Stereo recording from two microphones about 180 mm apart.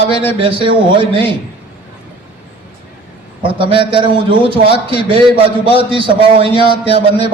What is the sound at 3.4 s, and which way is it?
A man's voice, 30° right (ahead or behind).